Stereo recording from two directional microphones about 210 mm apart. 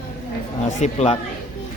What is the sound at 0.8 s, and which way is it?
Speech, 30° left (ahead or behind).